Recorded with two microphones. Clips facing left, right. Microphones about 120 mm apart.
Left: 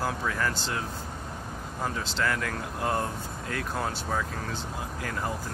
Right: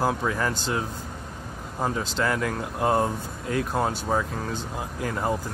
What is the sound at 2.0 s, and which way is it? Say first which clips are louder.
Speech: right 3 dB; 15° right (ahead or behind).